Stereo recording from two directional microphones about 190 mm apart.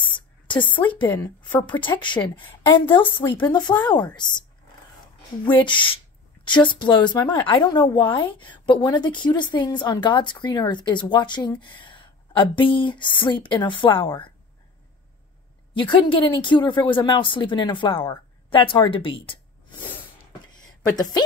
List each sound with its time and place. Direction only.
1.0 s speech: 10° left (ahead or behind)
1.7 s speech: 25° left (ahead or behind)
5.6 s speech: 25° left (ahead or behind)
15.7 s speech: 25° left (ahead or behind)
20.6 s a sound: 20° left (ahead or behind)